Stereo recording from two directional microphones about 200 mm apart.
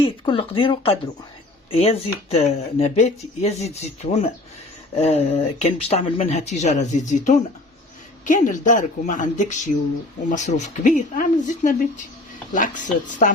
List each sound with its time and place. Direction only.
0.0 s speech: 25° left (ahead or behind)